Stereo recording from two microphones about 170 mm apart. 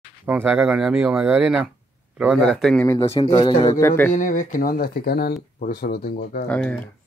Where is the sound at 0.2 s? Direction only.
10° right (ahead or behind); by 2.8 s 5° left (ahead or behind).